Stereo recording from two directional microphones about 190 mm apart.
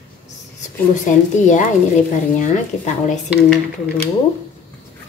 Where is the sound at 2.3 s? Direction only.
40° left (ahead or behind).